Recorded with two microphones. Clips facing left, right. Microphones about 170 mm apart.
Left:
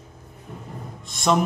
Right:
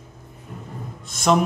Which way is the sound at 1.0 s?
Centre (ahead or behind).